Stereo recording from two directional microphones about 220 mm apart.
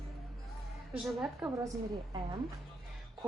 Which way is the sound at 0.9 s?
Centre (ahead or behind).